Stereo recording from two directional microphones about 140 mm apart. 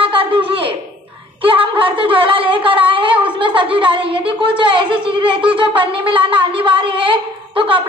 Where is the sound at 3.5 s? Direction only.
40° right (ahead or behind).